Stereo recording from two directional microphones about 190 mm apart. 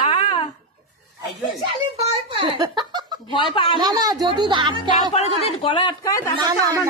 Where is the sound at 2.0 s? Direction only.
30° right (ahead or behind).